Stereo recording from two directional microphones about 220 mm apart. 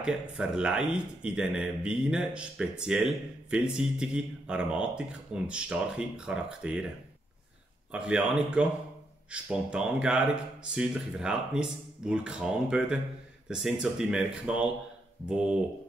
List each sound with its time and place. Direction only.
0.0 s speech: 5° right (ahead or behind)
7.9 s speech: 5° right (ahead or behind)